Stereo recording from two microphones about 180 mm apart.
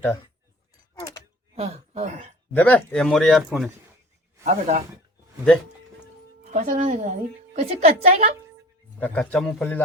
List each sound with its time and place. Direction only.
1.5 s speech: 35° right (ahead or behind)
2.5 s speech: 10° left (ahead or behind)
4.4 s a woman's voice: 40° right (ahead or behind)
6.5 s a woman's voice: 45° right (ahead or behind)
9.0 s a man's voice: 10° left (ahead or behind)